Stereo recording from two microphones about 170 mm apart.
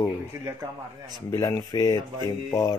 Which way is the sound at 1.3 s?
20° left (ahead or behind).